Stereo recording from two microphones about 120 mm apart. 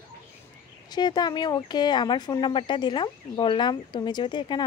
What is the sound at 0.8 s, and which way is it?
Speech, 35° left (ahead or behind).